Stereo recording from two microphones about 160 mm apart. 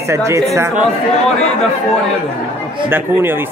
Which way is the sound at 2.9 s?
15° right (ahead or behind).